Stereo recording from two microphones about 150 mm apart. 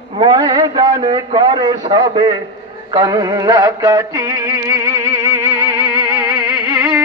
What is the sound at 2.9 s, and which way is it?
Music, 25° right (ahead or behind).